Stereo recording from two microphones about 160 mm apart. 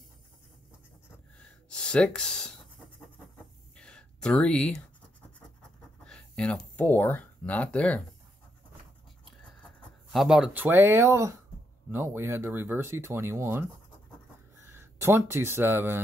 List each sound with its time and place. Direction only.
1.7 s speech: 5° left (ahead or behind)
3.7 s a sound: 5° left (ahead or behind)
6.0 s speech: 5° left (ahead or behind)
9.2 s a sound: 5° left (ahead or behind); by 11.3 s 20° right (ahead or behind)
11.9 s speech: 15° right (ahead or behind)
14.7 s speech: 15° right (ahead or behind)